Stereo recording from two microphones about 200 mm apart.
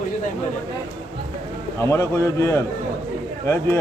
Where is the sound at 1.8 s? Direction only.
15° left (ahead or behind).